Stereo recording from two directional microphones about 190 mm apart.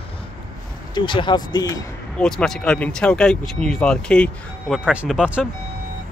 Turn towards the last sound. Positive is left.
turn(degrees=-5)  # may be behind; listen again after turning